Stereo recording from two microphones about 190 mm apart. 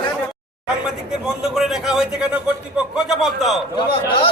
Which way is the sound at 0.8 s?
5° right (ahead or behind).